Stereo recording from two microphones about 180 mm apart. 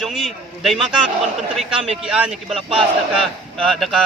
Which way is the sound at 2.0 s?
5° right (ahead or behind).